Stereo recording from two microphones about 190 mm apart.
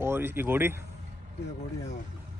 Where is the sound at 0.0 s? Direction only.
10° right (ahead or behind).